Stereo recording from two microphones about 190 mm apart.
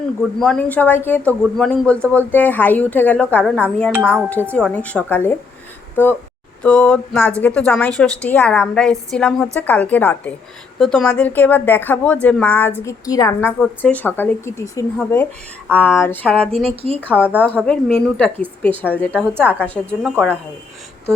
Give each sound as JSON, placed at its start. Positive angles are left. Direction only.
{"t": 0.2, "sound": "a woman's voice", "side_deg": 5}
{"t": 16.6, "sound": "speech", "side_deg": -30}
{"t": 17.7, "sound": "a woman's voice", "side_deg": 5}